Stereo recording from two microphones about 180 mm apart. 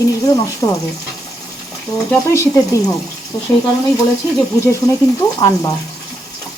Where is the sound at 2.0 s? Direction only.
15° left (ahead or behind).